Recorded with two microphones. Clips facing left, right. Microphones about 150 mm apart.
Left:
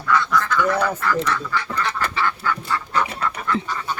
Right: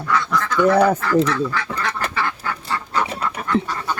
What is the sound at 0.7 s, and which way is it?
Speech, 40° right (ahead or behind).